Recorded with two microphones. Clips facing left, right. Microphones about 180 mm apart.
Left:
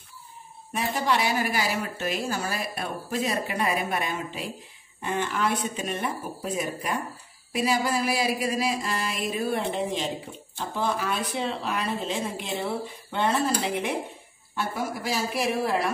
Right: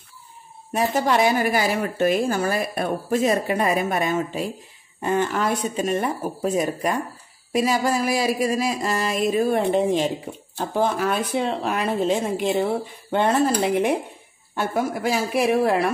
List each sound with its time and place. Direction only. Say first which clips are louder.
0.7 s a woman's voice: right 6 dB; 45° right (ahead or behind)
14.5 s a woman's voice: right 6 dB; 55° right (ahead or behind)